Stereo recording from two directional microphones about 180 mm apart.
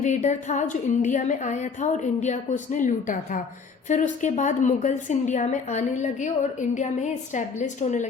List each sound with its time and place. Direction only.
0.0 s a woman's voice: 40° left (ahead or behind)